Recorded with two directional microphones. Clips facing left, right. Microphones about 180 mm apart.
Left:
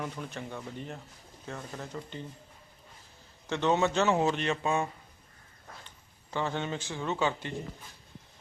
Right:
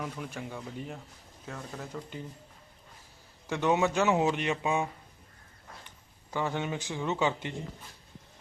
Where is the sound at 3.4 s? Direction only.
10° right (ahead or behind).